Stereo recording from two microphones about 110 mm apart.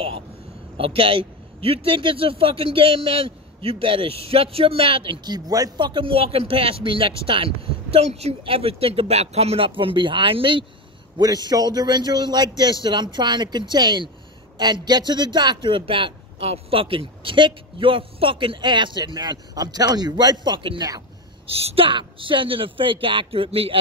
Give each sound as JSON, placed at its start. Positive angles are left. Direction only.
{"t": 0.7, "sound": "a man's voice", "side_deg": -55}
{"t": 11.1, "sound": "a man's voice", "side_deg": -40}
{"t": 21.5, "sound": "a man's voice", "side_deg": -60}